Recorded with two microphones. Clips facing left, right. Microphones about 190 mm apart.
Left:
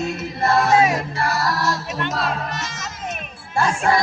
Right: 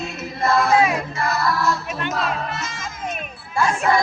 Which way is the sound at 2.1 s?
40° left (ahead or behind).